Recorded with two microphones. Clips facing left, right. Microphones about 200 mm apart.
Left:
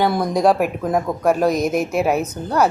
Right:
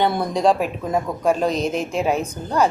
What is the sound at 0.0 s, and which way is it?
A woman's voice, 10° left (ahead or behind).